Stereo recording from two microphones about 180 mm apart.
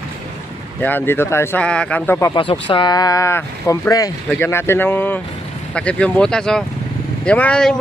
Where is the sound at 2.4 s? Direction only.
25° left (ahead or behind).